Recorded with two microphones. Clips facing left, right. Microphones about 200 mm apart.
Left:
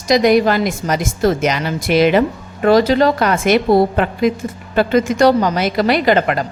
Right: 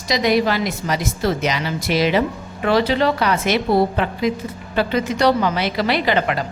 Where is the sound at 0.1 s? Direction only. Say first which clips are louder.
Left 6 dB; 50° left (ahead or behind).